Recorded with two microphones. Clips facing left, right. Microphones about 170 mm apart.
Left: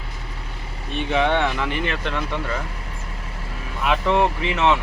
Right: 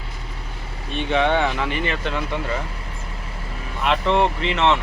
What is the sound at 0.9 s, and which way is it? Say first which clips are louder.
Speech: right 1 dB; centre (ahead or behind).